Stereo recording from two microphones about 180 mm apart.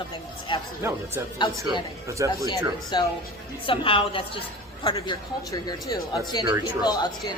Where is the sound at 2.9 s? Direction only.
25° left (ahead or behind).